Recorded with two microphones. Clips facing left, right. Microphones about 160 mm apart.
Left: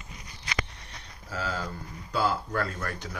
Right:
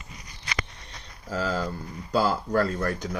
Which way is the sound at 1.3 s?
30° right (ahead or behind).